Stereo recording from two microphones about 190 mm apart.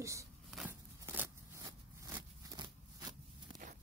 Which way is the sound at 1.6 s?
20° right (ahead or behind).